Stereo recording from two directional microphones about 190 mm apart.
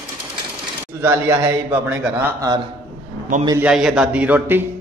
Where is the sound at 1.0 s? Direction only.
10° right (ahead or behind).